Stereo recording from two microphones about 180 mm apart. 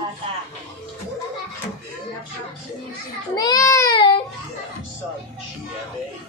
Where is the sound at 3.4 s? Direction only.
20° left (ahead or behind).